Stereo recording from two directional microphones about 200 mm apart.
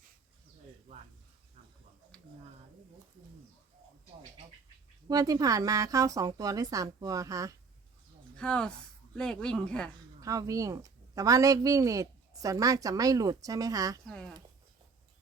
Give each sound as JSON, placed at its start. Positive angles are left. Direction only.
{"t": 2.1, "sound": "a sound", "side_deg": 5}
{"t": 5.0, "sound": "a woman's voice", "side_deg": -20}
{"t": 8.4, "sound": "speech", "side_deg": 5}
{"t": 10.2, "sound": "a woman's voice", "side_deg": -15}
{"t": 14.1, "sound": "speech", "side_deg": 5}